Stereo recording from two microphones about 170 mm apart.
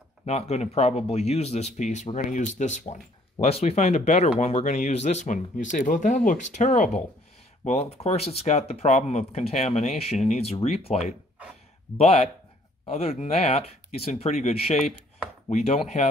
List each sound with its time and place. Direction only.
0.2 s speech: 40° left (ahead or behind)